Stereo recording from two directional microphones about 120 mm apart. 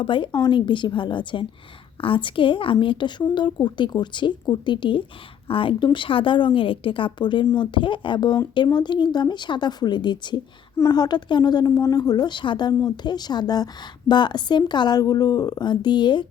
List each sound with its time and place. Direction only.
0.0 s a woman's voice: 45° left (ahead or behind)